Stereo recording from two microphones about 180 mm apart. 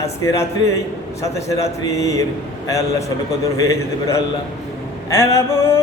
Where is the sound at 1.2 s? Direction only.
15° left (ahead or behind).